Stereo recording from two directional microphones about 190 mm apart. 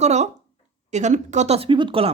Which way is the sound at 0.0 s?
35° right (ahead or behind).